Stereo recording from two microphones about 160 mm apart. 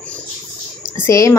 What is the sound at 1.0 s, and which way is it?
Speech, 20° left (ahead or behind).